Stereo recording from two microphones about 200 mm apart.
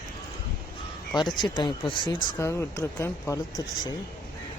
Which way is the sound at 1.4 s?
20° left (ahead or behind).